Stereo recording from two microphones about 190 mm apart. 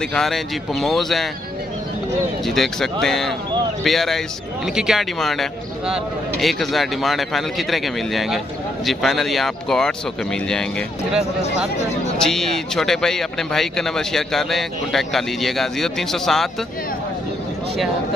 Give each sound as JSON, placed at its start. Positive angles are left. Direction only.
{"t": 0.1, "sound": "speech", "side_deg": 0}
{"t": 2.4, "sound": "speech", "side_deg": 0}